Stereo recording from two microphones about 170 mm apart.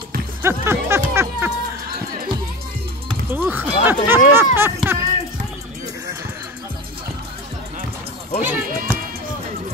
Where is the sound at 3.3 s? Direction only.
10° right (ahead or behind).